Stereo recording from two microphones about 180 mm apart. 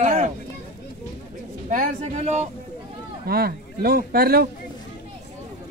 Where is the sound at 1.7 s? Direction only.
40° right (ahead or behind).